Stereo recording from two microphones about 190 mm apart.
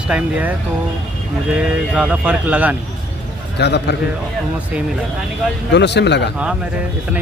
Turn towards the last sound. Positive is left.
turn(degrees=65)  # may be behind; listen again after turning